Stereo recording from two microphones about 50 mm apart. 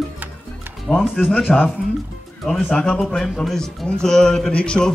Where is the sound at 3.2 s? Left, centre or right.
Centre.